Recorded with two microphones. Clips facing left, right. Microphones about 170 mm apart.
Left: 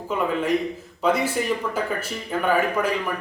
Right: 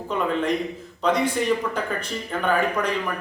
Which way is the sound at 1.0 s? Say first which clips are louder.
Even; 5° left (ahead or behind).